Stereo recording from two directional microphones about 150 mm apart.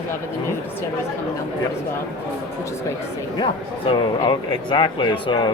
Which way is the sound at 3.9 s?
35° left (ahead or behind).